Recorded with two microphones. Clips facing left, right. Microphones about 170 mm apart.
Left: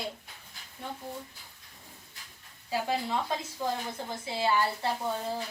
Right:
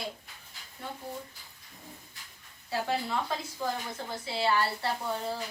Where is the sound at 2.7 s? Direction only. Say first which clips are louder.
Left 1 dB; 10° left (ahead or behind).